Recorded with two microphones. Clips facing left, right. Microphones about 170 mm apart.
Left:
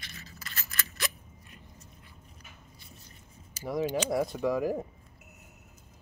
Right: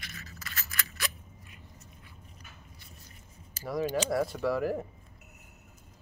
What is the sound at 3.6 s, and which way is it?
Speech, 20° left (ahead or behind).